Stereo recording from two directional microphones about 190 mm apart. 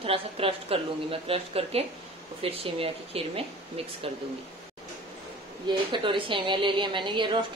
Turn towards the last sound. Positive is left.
turn(degrees=-25)  # may be behind; listen again after turning